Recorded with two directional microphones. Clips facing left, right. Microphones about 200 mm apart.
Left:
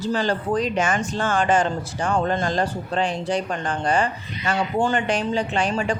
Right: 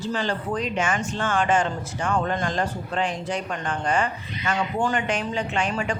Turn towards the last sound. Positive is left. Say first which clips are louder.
# left 3 dB
turn(degrees=35)  # may be behind; listen again after turning